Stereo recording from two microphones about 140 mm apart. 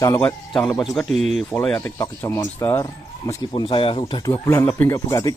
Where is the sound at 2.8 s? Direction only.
30° left (ahead or behind).